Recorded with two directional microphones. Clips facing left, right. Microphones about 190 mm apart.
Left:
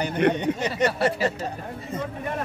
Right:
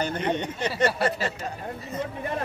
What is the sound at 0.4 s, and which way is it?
Speech, 15° left (ahead or behind).